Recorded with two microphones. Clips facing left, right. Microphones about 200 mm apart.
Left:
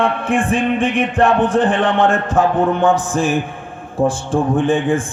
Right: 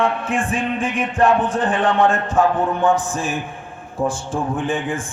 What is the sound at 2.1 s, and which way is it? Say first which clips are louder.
Speech: left 2 dB; 90° left.